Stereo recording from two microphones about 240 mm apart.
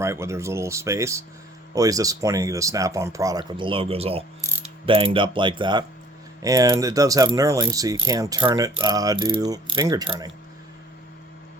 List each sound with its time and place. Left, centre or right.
0.0 s speech: centre